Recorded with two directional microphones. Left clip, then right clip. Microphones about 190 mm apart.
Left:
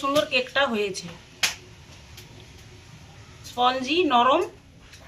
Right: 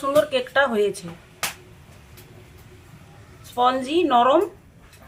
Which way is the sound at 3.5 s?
25° right (ahead or behind).